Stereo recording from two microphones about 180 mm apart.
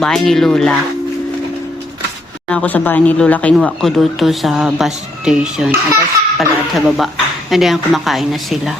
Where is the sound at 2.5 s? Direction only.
5° left (ahead or behind).